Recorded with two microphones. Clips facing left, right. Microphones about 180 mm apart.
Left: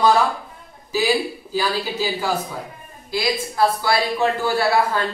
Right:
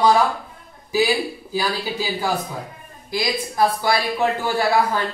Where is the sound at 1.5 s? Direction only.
15° right (ahead or behind).